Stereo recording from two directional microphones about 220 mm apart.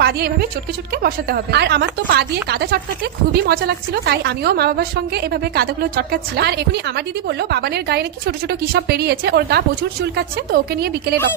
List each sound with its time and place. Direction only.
0.0 s a woman's voice: 45° right (ahead or behind)